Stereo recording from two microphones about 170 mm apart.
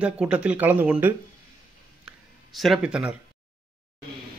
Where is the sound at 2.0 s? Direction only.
Centre (ahead or behind).